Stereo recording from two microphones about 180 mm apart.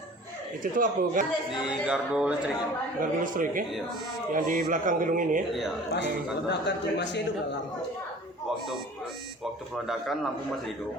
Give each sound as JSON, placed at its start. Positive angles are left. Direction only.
{"t": 0.6, "sound": "speech", "side_deg": -50}
{"t": 1.9, "sound": "speech", "side_deg": -5}
{"t": 3.0, "sound": "speech", "side_deg": -45}
{"t": 6.5, "sound": "a man's voice", "side_deg": 70}
{"t": 9.7, "sound": "speech", "side_deg": 0}